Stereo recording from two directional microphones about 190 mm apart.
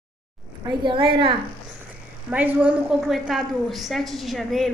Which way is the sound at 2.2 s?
10° right (ahead or behind).